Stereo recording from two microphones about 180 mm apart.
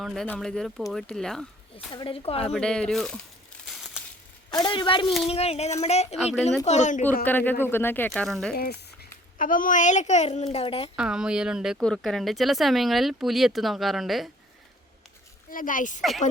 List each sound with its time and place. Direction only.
0.0 s speech: centre (ahead or behind)
1.9 s a woman's voice: 30° left (ahead or behind)
2.4 s speech: 5° left (ahead or behind)
4.5 s a woman's voice: 25° left (ahead or behind); by 7.0 s 40° left (ahead or behind)
7.3 s speech: 10° left (ahead or behind)
8.5 s a woman's voice: 60° left (ahead or behind); by 10.9 s 30° left (ahead or behind)
10.9 s speech: 5° right (ahead or behind)
15.4 s speech: 50° left (ahead or behind)
16.0 s speech: centre (ahead or behind)